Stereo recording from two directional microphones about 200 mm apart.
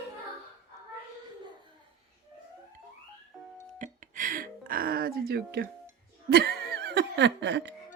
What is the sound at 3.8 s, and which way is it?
Music, 40° right (ahead or behind).